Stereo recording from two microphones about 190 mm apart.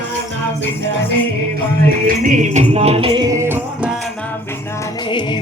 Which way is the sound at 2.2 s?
40° right (ahead or behind).